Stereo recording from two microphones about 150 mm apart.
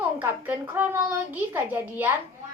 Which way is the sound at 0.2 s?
10° right (ahead or behind).